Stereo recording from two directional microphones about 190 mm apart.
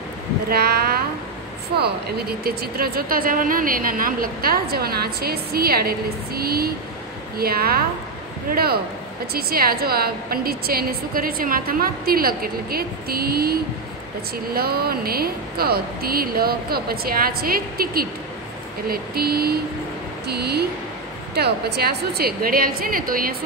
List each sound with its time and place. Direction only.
0.5 s speech: 55° right (ahead or behind)